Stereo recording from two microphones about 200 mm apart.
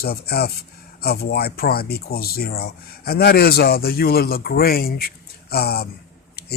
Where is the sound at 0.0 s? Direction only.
50° left (ahead or behind).